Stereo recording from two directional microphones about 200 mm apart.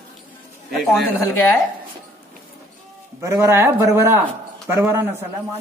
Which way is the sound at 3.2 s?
15° right (ahead or behind).